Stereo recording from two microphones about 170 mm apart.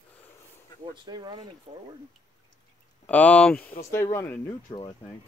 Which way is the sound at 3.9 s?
15° left (ahead or behind).